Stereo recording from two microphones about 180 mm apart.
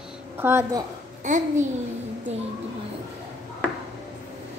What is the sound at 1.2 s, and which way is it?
Speech, 45° right (ahead or behind).